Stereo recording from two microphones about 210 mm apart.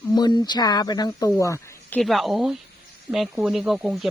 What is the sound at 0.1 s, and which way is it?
Speech, 20° left (ahead or behind).